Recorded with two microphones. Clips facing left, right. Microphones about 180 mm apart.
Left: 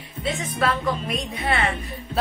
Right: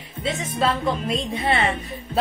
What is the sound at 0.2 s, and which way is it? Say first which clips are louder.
Speech: right 1 dB; 25° right (ahead or behind).